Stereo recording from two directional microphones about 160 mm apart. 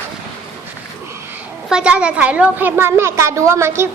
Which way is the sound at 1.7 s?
5° right (ahead or behind).